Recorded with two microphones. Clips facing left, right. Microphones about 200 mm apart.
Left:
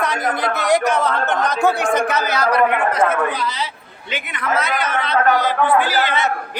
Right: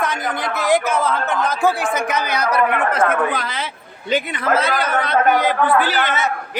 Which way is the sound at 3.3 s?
55° right (ahead or behind).